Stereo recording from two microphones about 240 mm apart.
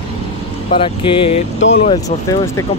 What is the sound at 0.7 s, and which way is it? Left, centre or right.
Speech, left.